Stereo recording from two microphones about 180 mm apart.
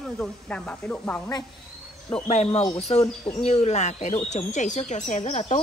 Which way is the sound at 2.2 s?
35° left (ahead or behind).